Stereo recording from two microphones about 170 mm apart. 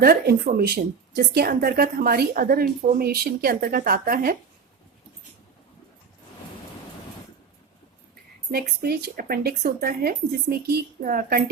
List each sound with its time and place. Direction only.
0.0 s a woman's voice: 65° right (ahead or behind)
8.5 s a woman's voice: 70° right (ahead or behind)